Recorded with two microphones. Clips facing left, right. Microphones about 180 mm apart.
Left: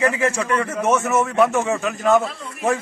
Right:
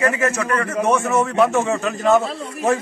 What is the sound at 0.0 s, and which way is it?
Speech, 20° left (ahead or behind).